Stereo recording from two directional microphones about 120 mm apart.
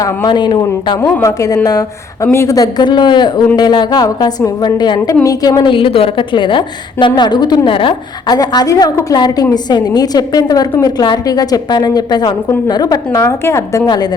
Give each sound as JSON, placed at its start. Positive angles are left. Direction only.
{"t": 0.3, "sound": "a woman's voice", "side_deg": 40}
{"t": 1.0, "sound": "a woman's voice", "side_deg": 25}
{"t": 13.2, "sound": "a woman's voice", "side_deg": 20}
{"t": 13.8, "sound": "a woman's voice", "side_deg": 35}